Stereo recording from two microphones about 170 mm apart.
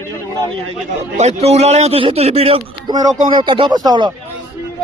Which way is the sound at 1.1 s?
40° right (ahead or behind).